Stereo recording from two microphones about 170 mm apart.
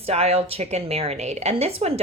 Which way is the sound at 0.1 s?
40° right (ahead or behind).